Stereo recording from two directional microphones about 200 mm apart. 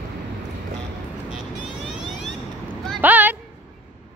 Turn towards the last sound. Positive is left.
turn(degrees=-10)  # may be behind; listen again after turning